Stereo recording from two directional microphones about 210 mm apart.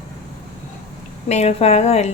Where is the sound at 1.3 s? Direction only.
30° left (ahead or behind).